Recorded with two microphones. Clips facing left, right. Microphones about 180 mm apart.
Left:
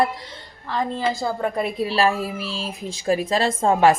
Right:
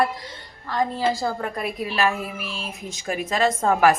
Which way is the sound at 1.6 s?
30° left (ahead or behind).